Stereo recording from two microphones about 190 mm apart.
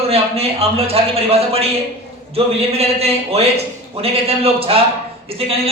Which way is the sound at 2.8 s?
30° right (ahead or behind).